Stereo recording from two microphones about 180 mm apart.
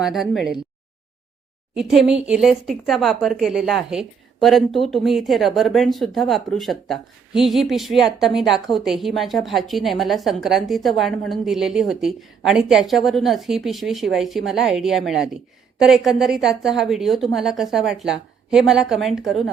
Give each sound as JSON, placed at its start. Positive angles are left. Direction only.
{"t": 0.0, "sound": "speech", "side_deg": 0}
{"t": 1.7, "sound": "speech", "side_deg": 0}